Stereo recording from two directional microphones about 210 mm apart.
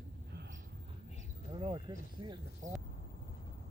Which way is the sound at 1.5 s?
25° right (ahead or behind).